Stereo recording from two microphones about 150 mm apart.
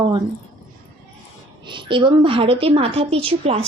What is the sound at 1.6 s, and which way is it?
A woman's voice, 35° right (ahead or behind).